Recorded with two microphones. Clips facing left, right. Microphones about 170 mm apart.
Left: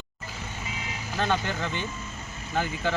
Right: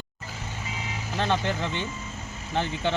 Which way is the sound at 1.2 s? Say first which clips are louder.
Right 1 dB; 20° right (ahead or behind).